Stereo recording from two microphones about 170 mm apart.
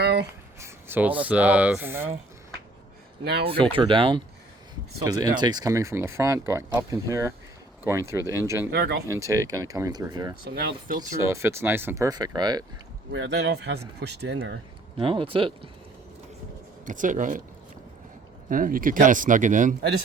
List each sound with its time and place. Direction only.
0.0 s a sound: 80° right
0.6 s speech: 10° right (ahead or behind)
3.4 s speech: 30° right (ahead or behind); by 8.7 s 15° right (ahead or behind)
8.7 s speech: 75° right (ahead or behind)
9.0 s speech: 15° right (ahead or behind)
10.5 s speech: 60° right (ahead or behind)
11.2 s speech: 15° right (ahead or behind)
13.1 s speech: 85° right
14.9 s speech: 30° right (ahead or behind)
16.8 s speech: 50° right (ahead or behind)
18.4 s speech: 55° right (ahead or behind)